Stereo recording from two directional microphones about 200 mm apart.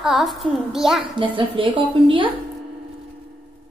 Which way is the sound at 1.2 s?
25° right (ahead or behind).